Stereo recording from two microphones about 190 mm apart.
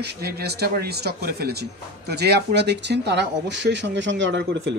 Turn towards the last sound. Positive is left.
turn(degrees=-70)  # may be behind; listen again after turning